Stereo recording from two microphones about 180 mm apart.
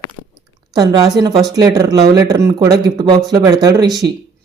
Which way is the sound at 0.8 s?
20° right (ahead or behind).